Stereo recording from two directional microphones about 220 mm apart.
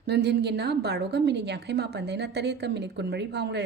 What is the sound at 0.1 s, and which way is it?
A woman's voice, 50° right (ahead or behind).